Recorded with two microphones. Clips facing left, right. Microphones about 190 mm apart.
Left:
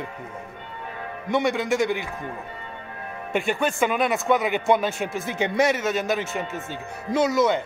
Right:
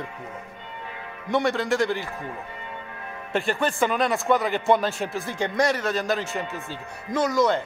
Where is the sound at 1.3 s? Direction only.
15° left (ahead or behind).